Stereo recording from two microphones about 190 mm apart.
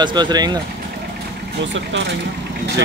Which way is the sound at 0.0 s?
20° right (ahead or behind).